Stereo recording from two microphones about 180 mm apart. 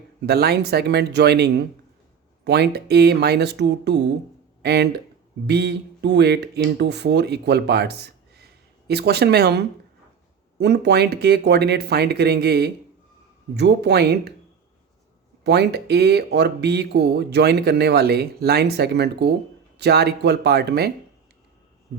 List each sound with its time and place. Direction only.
0.3 s speech: 60° right (ahead or behind)
15.4 s speech: 65° right (ahead or behind)